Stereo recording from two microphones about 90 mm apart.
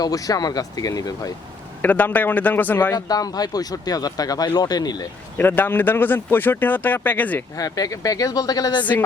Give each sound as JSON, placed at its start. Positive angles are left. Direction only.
{"t": 0.0, "sound": "speech", "side_deg": 40}
{"t": 1.8, "sound": "speech", "side_deg": 20}
{"t": 2.9, "sound": "speech", "side_deg": 45}
{"t": 5.4, "sound": "speech", "side_deg": 20}
{"t": 7.5, "sound": "speech", "side_deg": 40}
{"t": 8.8, "sound": "speech", "side_deg": 20}